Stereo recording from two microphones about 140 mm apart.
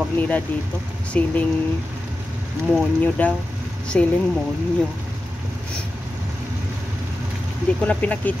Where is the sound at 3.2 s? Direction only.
10° left (ahead or behind).